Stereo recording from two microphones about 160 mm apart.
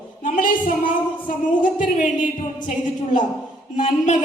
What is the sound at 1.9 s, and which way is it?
A woman's voice, 55° left (ahead or behind).